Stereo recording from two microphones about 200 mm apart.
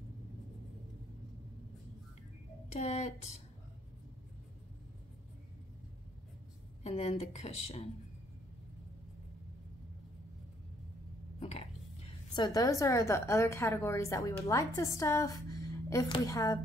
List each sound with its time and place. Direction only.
2.7 s speech: 35° left (ahead or behind)
6.8 s speech: 30° left (ahead or behind)
11.3 s a woman's voice: 30° left (ahead or behind)